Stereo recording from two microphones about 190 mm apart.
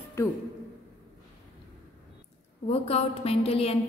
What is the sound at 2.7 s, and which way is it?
A woman's voice, 30° left (ahead or behind).